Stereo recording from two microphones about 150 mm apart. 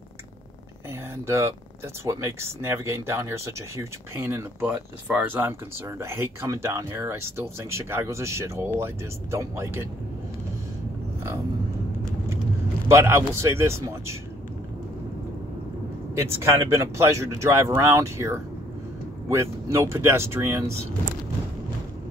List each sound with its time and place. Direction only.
1.1 s speech: 20° right (ahead or behind)
12.8 s speech: 15° right (ahead or behind)
16.2 s speech: 15° right (ahead or behind)